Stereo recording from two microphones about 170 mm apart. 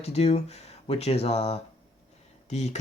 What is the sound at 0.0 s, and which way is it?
Speech, 40° left (ahead or behind).